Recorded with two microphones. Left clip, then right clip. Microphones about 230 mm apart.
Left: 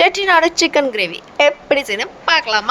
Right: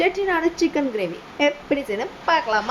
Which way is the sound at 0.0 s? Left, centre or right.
Left.